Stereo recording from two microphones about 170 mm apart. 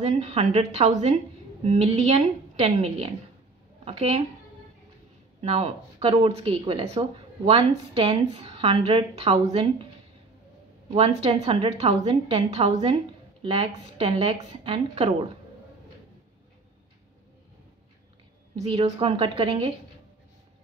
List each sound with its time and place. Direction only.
0.0 s speech: 40° right (ahead or behind)
5.4 s speech: 35° right (ahead or behind)
10.9 s speech: 35° right (ahead or behind)
18.6 s speech: 35° right (ahead or behind)